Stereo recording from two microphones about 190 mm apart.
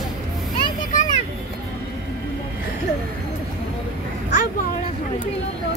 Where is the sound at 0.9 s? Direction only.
45° left (ahead or behind).